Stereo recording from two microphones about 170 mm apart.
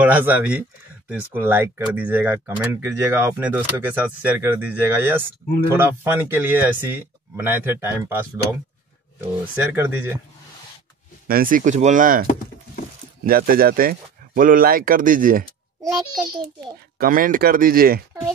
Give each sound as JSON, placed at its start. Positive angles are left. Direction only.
{"t": 0.0, "sound": "speech", "side_deg": -10}
{"t": 9.6, "sound": "speech", "side_deg": -10}
{"t": 11.2, "sound": "speech", "side_deg": -55}
{"t": 17.0, "sound": "speech", "side_deg": -55}